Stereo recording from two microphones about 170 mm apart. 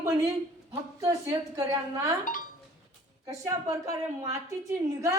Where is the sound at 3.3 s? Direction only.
20° right (ahead or behind).